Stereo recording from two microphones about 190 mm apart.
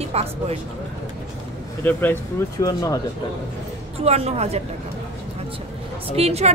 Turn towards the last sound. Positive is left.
turn(degrees=-35)  # may be behind; listen again after turning